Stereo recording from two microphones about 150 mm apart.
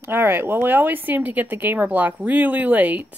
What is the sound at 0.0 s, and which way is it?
Speech, 15° right (ahead or behind).